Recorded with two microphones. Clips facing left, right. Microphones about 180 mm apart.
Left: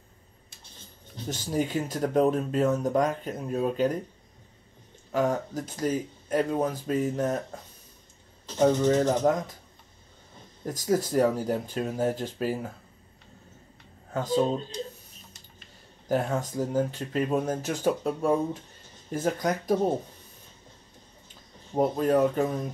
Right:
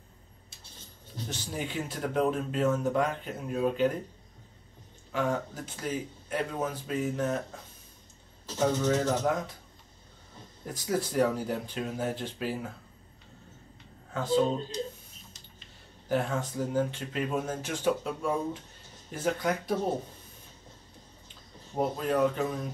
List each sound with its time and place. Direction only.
1.3 s speech: 45° left (ahead or behind)
5.1 s speech: 45° left (ahead or behind)
8.5 s speech: 35° left (ahead or behind)
10.7 s speech: 45° left (ahead or behind)
14.1 s speech: 40° left (ahead or behind)
16.1 s speech: 40° left (ahead or behind)
21.7 s speech: 45° left (ahead or behind)